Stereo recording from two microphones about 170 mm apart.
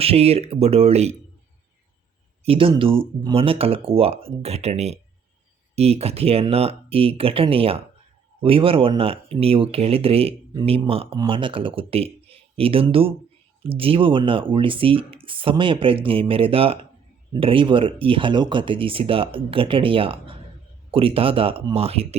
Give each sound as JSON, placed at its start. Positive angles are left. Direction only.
{"t": 0.0, "sound": "speech", "side_deg": -35}
{"t": 2.4, "sound": "speech", "side_deg": -35}